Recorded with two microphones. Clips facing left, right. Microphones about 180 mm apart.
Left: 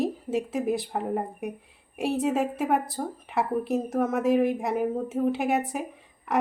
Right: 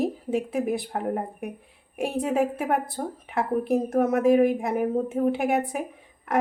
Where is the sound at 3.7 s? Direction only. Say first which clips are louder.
Right 3 dB; 65° right (ahead or behind).